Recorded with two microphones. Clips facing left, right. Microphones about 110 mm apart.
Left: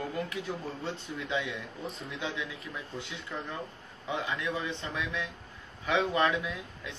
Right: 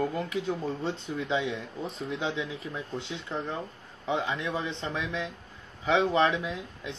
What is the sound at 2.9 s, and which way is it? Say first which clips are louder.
Speech: right 5 dB; 25° right (ahead or behind).